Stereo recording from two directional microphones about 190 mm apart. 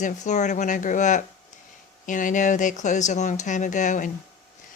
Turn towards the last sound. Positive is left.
turn(degrees=40)  # may be behind; listen again after turning